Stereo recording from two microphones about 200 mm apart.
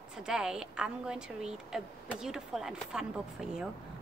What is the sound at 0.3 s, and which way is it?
A woman's voice, 5° right (ahead or behind).